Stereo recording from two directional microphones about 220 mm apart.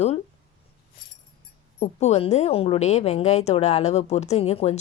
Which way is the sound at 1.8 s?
30° left (ahead or behind).